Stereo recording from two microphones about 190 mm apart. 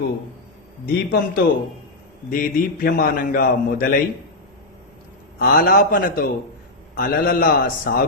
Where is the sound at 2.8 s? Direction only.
45° left (ahead or behind).